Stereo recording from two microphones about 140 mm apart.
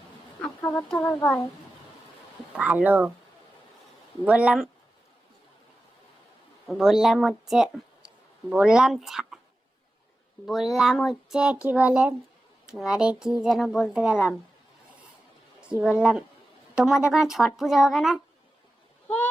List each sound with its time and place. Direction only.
0.6 s speech: 20° left (ahead or behind)
2.6 s speech: 10° right (ahead or behind)
4.3 s speech: 5° right (ahead or behind)
6.7 s speech: 5° right (ahead or behind)
10.4 s speech: centre (ahead or behind)
15.6 s speech: 5° right (ahead or behind)
19.0 s honk: 10° left (ahead or behind)